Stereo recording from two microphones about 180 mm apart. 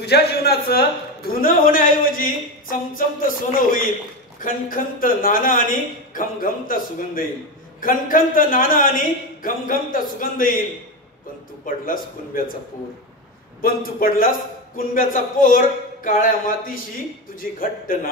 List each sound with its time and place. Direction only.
0.0 s speech: 65° left (ahead or behind)
11.6 s speech: 50° left (ahead or behind)
13.6 s speech: 55° left (ahead or behind)